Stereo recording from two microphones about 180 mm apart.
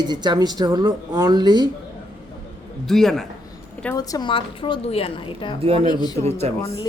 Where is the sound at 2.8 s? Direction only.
Centre (ahead or behind).